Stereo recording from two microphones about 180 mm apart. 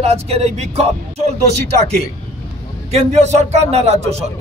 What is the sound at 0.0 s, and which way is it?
A man's voice, 35° right (ahead or behind).